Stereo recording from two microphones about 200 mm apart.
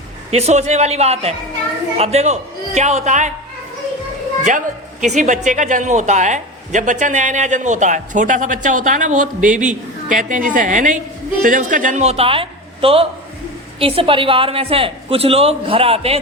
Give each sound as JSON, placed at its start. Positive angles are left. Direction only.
{"t": 0.3, "sound": "speech", "side_deg": -35}
{"t": 4.4, "sound": "a woman's voice", "side_deg": -40}